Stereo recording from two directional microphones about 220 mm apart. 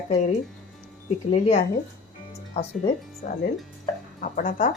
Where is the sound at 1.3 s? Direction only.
35° left (ahead or behind).